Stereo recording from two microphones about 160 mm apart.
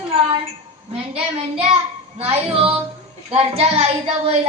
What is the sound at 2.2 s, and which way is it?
A woman's voice, 35° right (ahead or behind).